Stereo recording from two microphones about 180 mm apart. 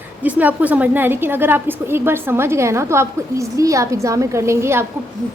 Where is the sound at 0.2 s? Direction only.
10° right (ahead or behind).